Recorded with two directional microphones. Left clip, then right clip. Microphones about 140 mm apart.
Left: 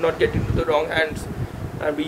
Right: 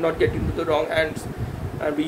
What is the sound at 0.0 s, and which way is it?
Speech, 20° right (ahead or behind).